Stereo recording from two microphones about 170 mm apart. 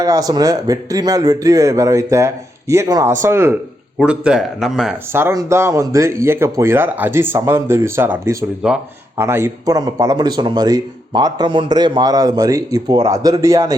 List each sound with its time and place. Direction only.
0.0 s speech: 20° right (ahead or behind); by 4.9 s centre (ahead or behind)
5.1 s speech: 15° right (ahead or behind)